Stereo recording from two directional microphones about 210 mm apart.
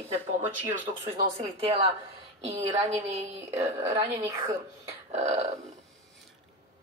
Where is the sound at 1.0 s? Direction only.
25° right (ahead or behind).